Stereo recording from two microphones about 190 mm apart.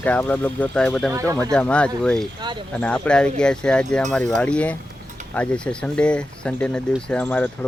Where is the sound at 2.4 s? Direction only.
25° right (ahead or behind).